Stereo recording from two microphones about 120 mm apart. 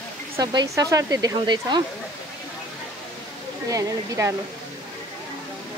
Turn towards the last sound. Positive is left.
turn(degrees=-25)  # may be behind; listen again after turning